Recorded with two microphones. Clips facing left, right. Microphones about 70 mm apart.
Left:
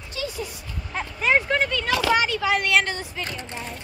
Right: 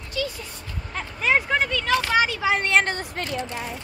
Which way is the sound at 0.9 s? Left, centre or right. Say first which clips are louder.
Left 1 dB; centre.